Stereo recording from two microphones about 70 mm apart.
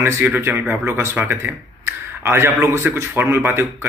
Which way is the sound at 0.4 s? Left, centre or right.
Right.